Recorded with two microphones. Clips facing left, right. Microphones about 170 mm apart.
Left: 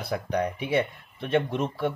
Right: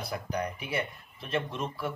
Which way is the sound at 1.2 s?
65° left (ahead or behind).